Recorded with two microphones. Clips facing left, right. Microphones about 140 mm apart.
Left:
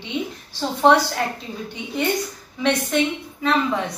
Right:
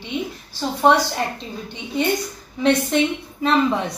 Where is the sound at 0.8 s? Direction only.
10° right (ahead or behind).